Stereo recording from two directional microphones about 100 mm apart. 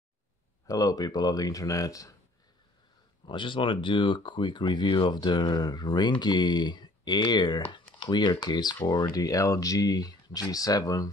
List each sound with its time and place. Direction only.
0.7 s speech: 35° left (ahead or behind)
3.3 s speech: 55° left (ahead or behind); by 11.1 s 35° left (ahead or behind)